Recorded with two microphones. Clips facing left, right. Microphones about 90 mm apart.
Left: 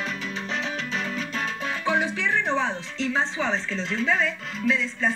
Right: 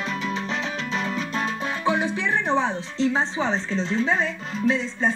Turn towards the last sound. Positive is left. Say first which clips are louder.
# right 2 dB
turn(degrees=-30)  # may be behind; listen again after turning